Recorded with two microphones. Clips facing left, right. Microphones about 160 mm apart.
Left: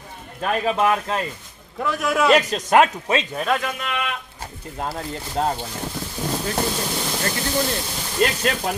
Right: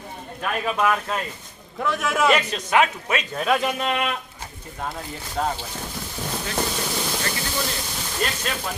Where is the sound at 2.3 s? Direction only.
40° left (ahead or behind).